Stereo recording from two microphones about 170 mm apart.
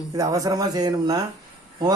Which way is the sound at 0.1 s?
20° right (ahead or behind).